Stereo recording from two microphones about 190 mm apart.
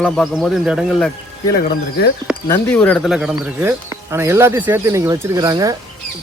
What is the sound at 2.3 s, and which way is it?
Speech, 5° right (ahead or behind).